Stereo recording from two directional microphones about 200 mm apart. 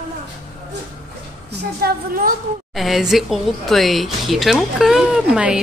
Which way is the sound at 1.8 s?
45° right (ahead or behind).